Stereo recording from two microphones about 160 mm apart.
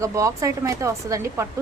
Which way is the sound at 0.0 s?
20° right (ahead or behind).